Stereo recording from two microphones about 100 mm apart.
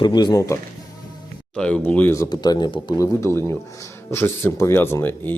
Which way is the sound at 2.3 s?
45° left (ahead or behind).